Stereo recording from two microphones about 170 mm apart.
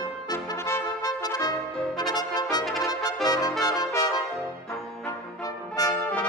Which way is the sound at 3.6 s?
20° left (ahead or behind).